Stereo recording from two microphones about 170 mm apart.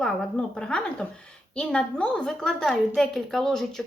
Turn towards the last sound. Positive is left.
turn(degrees=0)  # may be behind; listen again after turning